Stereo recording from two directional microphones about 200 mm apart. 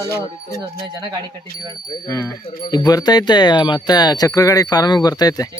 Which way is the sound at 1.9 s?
15° left (ahead or behind).